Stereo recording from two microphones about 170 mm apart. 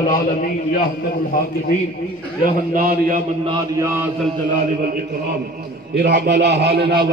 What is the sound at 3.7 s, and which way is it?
Speech, 15° right (ahead or behind).